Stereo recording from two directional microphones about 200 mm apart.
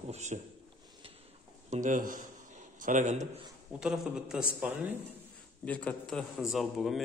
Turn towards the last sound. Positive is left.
turn(degrees=0)  # may be behind; listen again after turning